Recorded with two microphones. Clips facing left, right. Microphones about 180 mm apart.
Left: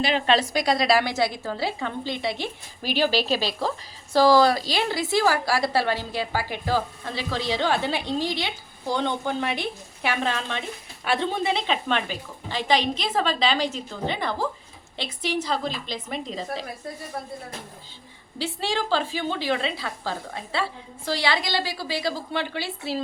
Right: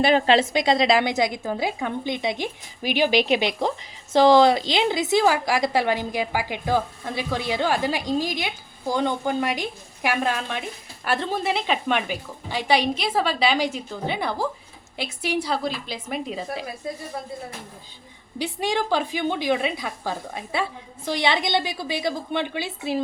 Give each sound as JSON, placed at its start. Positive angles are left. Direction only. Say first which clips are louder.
{"t": 0.3, "sound": "a woman's voice", "louder": "right 3 dB", "side_deg": -25}
{"t": 18.3, "sound": "a woman's voice", "louder": "right 2 dB", "side_deg": -15}